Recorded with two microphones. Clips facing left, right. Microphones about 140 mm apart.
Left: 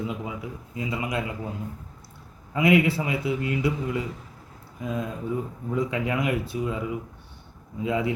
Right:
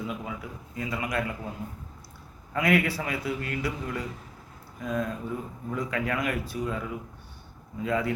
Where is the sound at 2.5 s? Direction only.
20° left (ahead or behind).